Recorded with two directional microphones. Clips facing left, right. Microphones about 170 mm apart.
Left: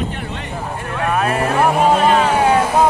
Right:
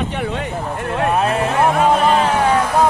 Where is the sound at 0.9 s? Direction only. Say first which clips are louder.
Right 2 dB; 35° right (ahead or behind).